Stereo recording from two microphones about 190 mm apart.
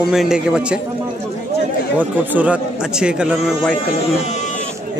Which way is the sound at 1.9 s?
10° right (ahead or behind).